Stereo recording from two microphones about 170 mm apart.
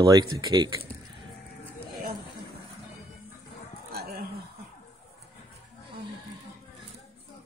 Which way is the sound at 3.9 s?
65° right (ahead or behind).